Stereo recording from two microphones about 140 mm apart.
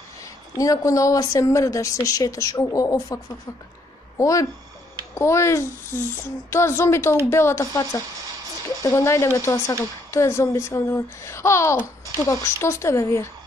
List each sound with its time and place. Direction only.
0.2 s a woman's voice: 25° left (ahead or behind)
4.2 s a woman's voice: 25° left (ahead or behind)